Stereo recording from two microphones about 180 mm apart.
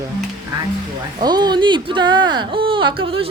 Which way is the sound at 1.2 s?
25° right (ahead or behind).